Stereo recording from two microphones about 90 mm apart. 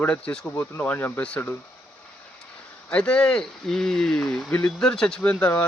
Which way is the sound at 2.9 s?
10° left (ahead or behind).